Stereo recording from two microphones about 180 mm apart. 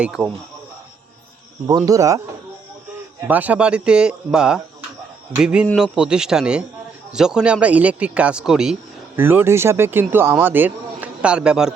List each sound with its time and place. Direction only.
0.0 s speech: 5° right (ahead or behind)
1.6 s speech: 20° right (ahead or behind); by 11.7 s 5° right (ahead or behind)